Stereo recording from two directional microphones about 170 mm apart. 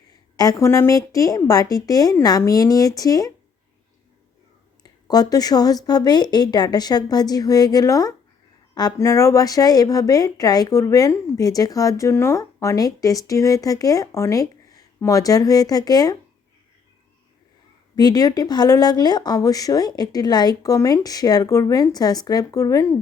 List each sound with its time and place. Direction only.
0.3 s a woman's voice: 20° left (ahead or behind)
4.8 s a woman's voice: 25° left (ahead or behind)
17.9 s a woman's voice: 20° left (ahead or behind)